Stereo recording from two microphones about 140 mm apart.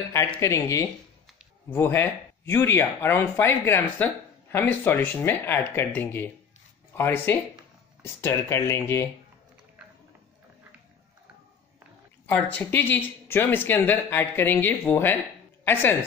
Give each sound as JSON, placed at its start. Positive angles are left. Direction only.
{"t": 0.4, "sound": "speech", "side_deg": 20}
{"t": 12.3, "sound": "a woman's voice", "side_deg": 10}